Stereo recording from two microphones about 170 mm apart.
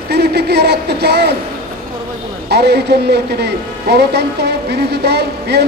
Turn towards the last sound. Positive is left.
turn(degrees=-75)  # may be behind; listen again after turning